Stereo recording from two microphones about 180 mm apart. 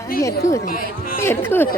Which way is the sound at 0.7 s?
50° left (ahead or behind).